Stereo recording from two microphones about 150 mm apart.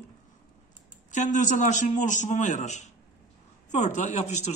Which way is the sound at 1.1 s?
55° left (ahead or behind).